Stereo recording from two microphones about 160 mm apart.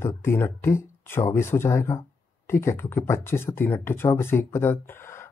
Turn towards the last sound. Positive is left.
turn(degrees=15)  # may be behind; listen again after turning